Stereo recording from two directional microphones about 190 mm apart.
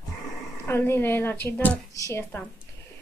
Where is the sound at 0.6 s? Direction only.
10° left (ahead or behind).